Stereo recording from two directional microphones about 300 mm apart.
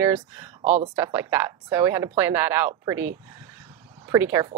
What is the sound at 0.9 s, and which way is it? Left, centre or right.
Speech, centre.